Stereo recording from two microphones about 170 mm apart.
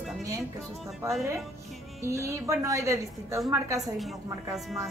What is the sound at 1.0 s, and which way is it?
A woman's voice, 15° right (ahead or behind).